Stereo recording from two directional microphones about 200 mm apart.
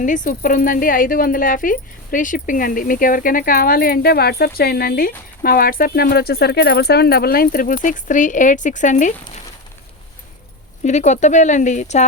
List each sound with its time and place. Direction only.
0.0 s speech: 40° left (ahead or behind)
10.8 s speech: 35° left (ahead or behind)